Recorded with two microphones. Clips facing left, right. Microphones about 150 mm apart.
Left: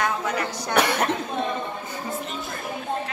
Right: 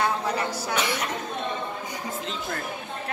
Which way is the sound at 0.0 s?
30° right (ahead or behind).